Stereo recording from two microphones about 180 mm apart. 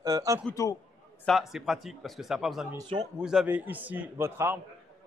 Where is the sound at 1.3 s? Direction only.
Centre (ahead or behind).